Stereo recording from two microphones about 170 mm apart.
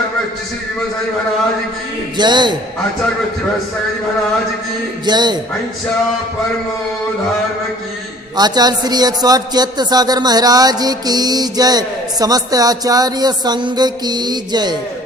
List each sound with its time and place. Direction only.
2.1 s speech: 25° right (ahead or behind)
5.0 s speech: 25° right (ahead or behind)
8.4 s speech: 25° right (ahead or behind)